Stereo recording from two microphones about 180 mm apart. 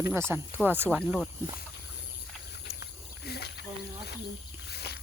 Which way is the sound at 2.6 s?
65° left (ahead or behind).